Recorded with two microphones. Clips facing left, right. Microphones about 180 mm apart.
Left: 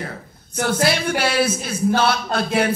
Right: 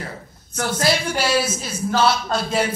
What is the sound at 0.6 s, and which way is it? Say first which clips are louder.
A woman's voice: left 1 dB; 60° left (ahead or behind).